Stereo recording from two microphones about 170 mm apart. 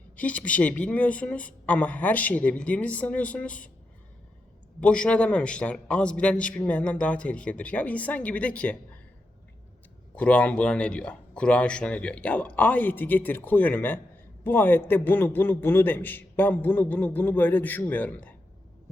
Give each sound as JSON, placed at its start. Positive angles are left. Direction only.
{"t": 0.2, "sound": "a man's voice", "side_deg": 10}
{"t": 4.8, "sound": "a man's voice", "side_deg": 5}
{"t": 10.2, "sound": "a man's voice", "side_deg": 5}